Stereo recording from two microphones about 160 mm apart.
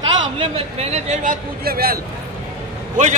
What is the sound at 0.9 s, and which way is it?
Speech, 45° right (ahead or behind).